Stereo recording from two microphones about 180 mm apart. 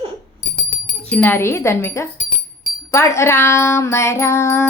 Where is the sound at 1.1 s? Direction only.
10° left (ahead or behind).